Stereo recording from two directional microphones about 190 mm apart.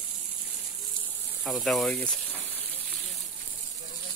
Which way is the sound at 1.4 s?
Centre (ahead or behind).